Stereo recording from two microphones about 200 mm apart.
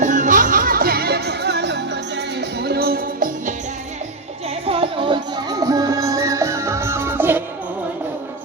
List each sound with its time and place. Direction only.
0.0 s music: 40° right (ahead or behind)
4.4 s music: 30° right (ahead or behind); by 7.4 s 10° right (ahead or behind)